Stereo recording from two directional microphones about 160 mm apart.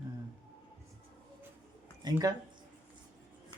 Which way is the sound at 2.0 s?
25° right (ahead or behind).